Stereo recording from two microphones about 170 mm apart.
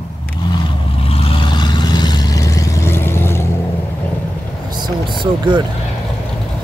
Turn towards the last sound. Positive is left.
turn(degrees=-30)  # may be behind; listen again after turning